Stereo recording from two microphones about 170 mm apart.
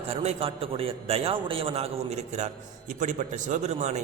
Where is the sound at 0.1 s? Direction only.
35° right (ahead or behind).